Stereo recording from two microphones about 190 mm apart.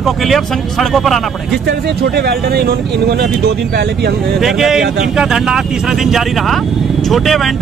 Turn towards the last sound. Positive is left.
turn(degrees=0)  # may be behind; listen again after turning